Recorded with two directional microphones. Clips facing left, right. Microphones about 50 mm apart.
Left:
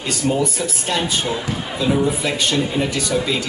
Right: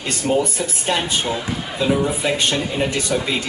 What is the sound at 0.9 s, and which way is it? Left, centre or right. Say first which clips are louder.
Speech: even; centre.